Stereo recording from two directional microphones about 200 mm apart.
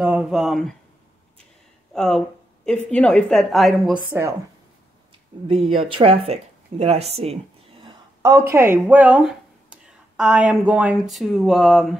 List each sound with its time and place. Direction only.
0.0 s speech: 5° right (ahead or behind)
2.0 s a woman's voice: 5° left (ahead or behind)
4.1 s speech: 15° right (ahead or behind)
5.8 s speech: 25° right (ahead or behind)
7.8 s speech: 15° right (ahead or behind); by 12.0 s centre (ahead or behind)